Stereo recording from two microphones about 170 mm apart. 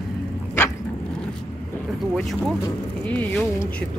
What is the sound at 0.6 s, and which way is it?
Dog, 15° left (ahead or behind).